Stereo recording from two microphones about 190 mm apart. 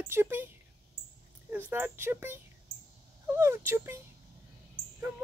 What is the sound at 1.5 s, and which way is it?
Speech, 10° right (ahead or behind).